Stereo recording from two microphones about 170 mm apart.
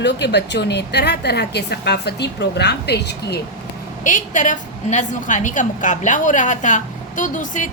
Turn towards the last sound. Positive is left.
turn(degrees=50)  # may be behind; listen again after turning